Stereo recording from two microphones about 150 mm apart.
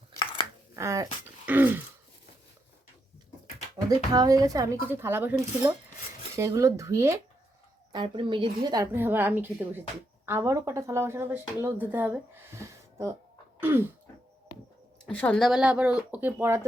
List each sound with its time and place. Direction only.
0.8 s speech: 20° right (ahead or behind)
3.8 s speech: 25° right (ahead or behind)
7.9 s speech: 35° right (ahead or behind); by 13.9 s 15° right (ahead or behind)
15.0 s speech: 10° left (ahead or behind); by 16.6 s 15° right (ahead or behind)